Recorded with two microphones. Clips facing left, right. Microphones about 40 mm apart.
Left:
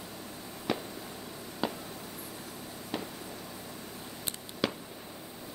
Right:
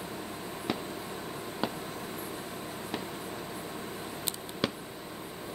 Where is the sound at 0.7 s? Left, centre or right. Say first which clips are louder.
Left 1 dB; centre.